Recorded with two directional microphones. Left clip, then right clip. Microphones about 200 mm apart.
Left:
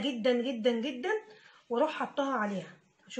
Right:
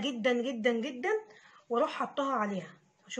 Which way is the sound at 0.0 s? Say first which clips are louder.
Left 1 dB; 20° right (ahead or behind).